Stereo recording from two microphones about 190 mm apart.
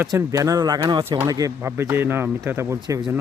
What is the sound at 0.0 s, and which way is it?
Speech, 15° right (ahead or behind).